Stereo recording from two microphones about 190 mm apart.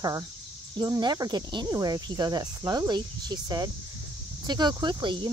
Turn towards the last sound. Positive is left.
turn(degrees=-25)  # may be behind; listen again after turning